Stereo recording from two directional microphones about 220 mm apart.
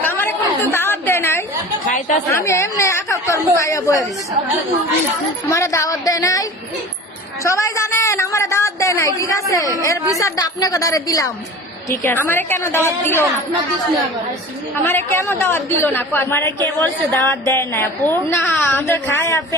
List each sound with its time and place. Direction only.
0.0 s chatter: 10° left (ahead or behind)
1.9 s speech: 35° left (ahead or behind)
2.3 s a woman's voice: 15° left (ahead or behind)
5.5 s a woman's voice: 15° left (ahead or behind)
14.8 s a woman's voice: 10° left (ahead or behind)